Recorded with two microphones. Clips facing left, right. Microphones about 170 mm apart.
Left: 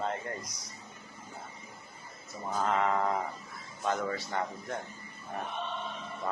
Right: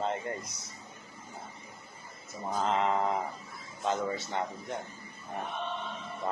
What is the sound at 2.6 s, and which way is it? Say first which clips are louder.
A man's voice: even; 20° right (ahead or behind).